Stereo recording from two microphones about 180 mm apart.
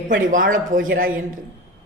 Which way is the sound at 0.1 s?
50° right (ahead or behind).